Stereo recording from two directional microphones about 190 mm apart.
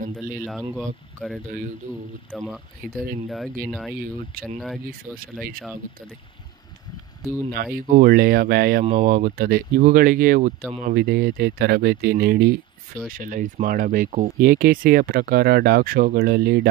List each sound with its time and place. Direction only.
0.5 s speech: centre (ahead or behind)
4.4 s speech: 50° right (ahead or behind)
7.5 s speech: 50° right (ahead or behind)
8.8 s speech: 40° right (ahead or behind); by 16.6 s 55° right (ahead or behind)